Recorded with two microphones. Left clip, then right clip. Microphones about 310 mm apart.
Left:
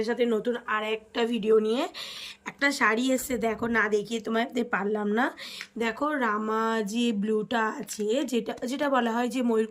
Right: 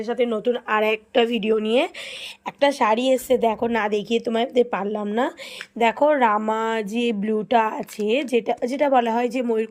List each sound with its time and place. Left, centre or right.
0.0 s speech: centre
2.6 s a woman's voice: centre
3.3 s speech: centre